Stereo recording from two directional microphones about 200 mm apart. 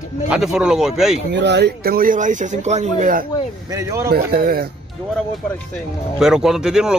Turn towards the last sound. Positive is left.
turn(degrees=-5)  # may be behind; listen again after turning